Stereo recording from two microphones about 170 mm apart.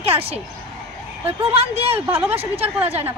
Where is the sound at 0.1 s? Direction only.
35° right (ahead or behind).